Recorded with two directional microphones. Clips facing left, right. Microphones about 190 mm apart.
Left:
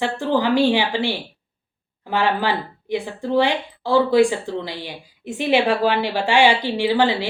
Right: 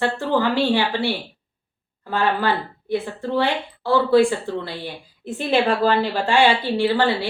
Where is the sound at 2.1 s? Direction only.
15° left (ahead or behind).